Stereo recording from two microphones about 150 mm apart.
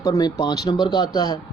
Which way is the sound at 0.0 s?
25° left (ahead or behind).